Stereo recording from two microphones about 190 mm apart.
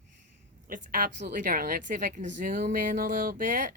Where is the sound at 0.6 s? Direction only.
45° right (ahead or behind).